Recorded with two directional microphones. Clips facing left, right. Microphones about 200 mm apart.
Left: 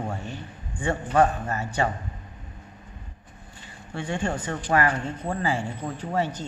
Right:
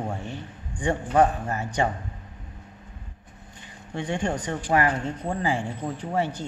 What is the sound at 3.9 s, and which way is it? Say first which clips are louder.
Speech: right 1 dB; 15° right (ahead or behind).